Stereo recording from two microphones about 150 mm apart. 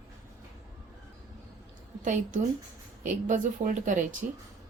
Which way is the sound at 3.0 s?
60° right (ahead or behind).